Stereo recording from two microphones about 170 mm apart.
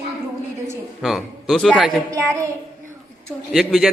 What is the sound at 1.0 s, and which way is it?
Speech, centre (ahead or behind).